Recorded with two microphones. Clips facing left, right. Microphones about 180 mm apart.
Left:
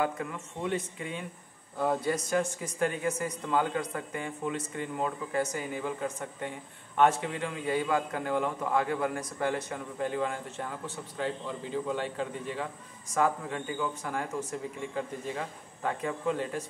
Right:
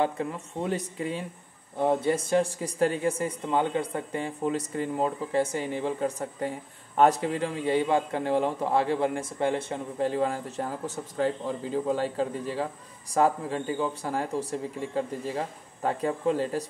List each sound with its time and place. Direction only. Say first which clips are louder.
0.0 s a man's voice: right 4 dB; 30° right (ahead or behind)
1.8 s a man's voice: right 4 dB; 25° right (ahead or behind)